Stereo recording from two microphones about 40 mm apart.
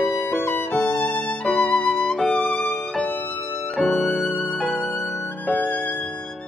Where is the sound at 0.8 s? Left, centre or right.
Centre.